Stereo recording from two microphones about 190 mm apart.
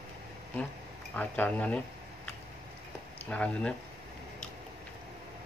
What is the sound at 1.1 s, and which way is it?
Speech, 10° left (ahead or behind).